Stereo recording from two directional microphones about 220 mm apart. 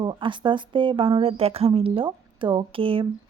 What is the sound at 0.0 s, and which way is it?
Speech, 20° right (ahead or behind).